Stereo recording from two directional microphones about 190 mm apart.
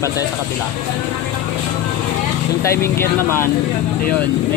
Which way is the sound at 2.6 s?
15° left (ahead or behind).